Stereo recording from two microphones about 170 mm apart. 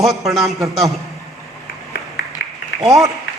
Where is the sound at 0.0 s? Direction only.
Centre (ahead or behind).